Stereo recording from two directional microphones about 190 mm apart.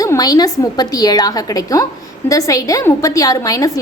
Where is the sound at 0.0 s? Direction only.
20° left (ahead or behind).